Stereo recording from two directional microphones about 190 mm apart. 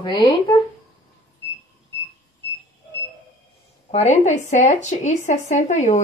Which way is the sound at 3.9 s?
35° left (ahead or behind).